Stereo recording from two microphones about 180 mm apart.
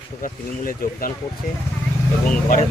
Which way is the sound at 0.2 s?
50° left (ahead or behind).